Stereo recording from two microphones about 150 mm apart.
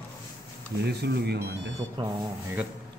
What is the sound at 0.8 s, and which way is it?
Speech, 90° right.